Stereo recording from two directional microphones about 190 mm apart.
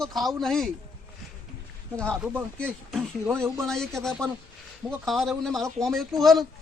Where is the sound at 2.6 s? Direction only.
5° left (ahead or behind).